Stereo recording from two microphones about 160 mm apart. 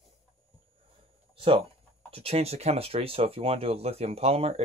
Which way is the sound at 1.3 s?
35° right (ahead or behind).